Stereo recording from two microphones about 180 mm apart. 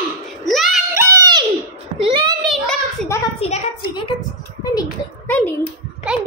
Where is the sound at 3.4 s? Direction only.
35° left (ahead or behind).